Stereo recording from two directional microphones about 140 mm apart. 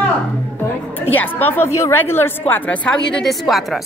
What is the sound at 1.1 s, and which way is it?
A woman's voice, 15° left (ahead or behind).